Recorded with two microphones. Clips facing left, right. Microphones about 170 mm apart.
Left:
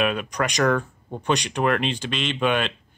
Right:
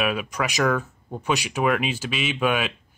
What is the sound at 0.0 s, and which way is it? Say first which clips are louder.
Speech: left 1 dB; 5° right (ahead or behind).